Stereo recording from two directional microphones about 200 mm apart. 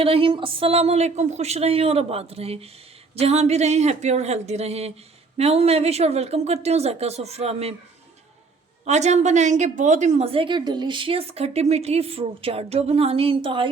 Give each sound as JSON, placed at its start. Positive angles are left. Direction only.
{"t": 0.0, "sound": "a woman's voice", "side_deg": -25}
{"t": 8.8, "sound": "a woman's voice", "side_deg": -35}